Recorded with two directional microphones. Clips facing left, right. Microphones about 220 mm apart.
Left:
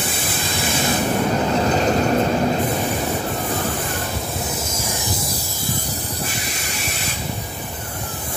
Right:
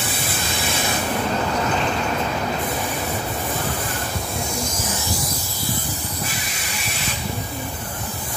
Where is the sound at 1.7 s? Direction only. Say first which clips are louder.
Left 6 dB; 40° left (ahead or behind).